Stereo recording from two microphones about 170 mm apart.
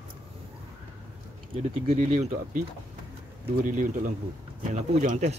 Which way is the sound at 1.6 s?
40° right (ahead or behind).